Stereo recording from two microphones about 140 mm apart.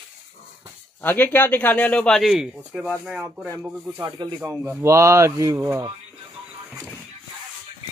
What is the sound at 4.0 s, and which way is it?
Speech, 30° right (ahead or behind).